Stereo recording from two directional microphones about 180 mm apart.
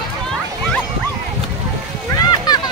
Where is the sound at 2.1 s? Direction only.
20° left (ahead or behind).